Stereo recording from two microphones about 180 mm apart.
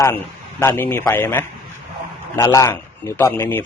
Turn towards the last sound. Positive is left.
turn(degrees=10)  # may be behind; listen again after turning